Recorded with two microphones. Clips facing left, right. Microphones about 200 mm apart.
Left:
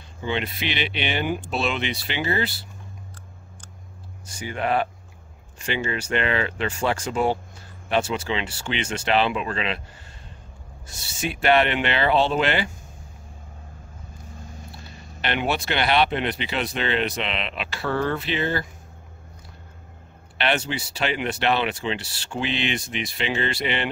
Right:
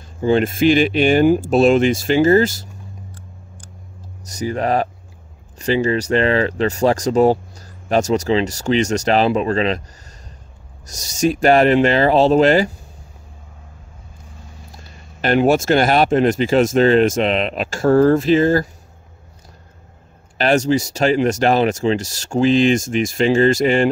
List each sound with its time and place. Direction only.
0.2 s speech: 45° right (ahead or behind)
4.3 s speech: 40° right (ahead or behind)
10.9 s speech: 40° right (ahead or behind)
15.2 s speech: 45° right (ahead or behind)
20.3 s speech: 40° right (ahead or behind)